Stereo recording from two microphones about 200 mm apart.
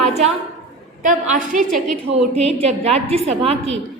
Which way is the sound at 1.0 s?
40° right (ahead or behind).